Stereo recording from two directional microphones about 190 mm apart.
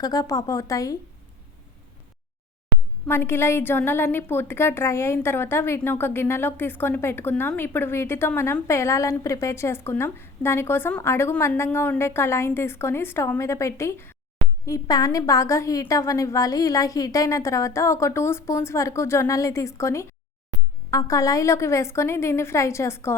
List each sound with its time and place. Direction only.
0.0 s a woman's voice: 20° left (ahead or behind)
3.1 s a woman's voice: 10° left (ahead or behind)